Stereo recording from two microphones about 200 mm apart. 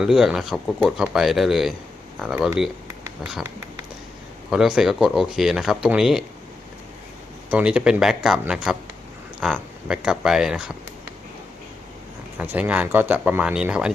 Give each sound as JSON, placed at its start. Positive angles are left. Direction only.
{"t": 0.0, "sound": "speech", "side_deg": 0}
{"t": 4.5, "sound": "speech", "side_deg": 0}
{"t": 7.5, "sound": "speech", "side_deg": -5}
{"t": 12.4, "sound": "speech", "side_deg": -10}